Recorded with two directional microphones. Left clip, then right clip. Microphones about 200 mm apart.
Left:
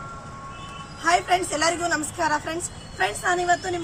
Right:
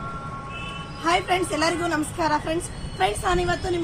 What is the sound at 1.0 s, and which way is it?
Speech, 10° left (ahead or behind).